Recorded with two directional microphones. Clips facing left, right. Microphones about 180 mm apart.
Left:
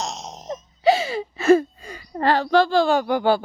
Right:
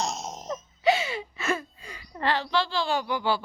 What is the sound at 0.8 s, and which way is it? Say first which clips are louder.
Speech: left 6 dB; 35° left (ahead or behind).